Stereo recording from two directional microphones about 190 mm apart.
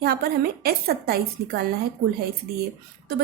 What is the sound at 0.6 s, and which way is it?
A woman's voice, 55° right (ahead or behind).